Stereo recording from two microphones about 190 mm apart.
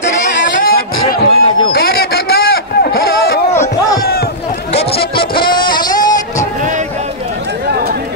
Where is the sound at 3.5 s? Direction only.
15° left (ahead or behind).